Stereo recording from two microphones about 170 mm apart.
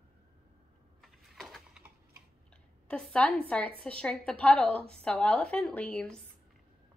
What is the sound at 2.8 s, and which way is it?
A woman's voice, 5° left (ahead or behind).